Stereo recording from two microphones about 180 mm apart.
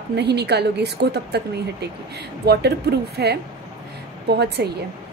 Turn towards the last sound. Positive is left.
turn(degrees=-65)  # may be behind; listen again after turning